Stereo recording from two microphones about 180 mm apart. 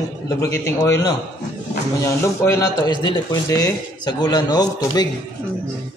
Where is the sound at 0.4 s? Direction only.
15° left (ahead or behind).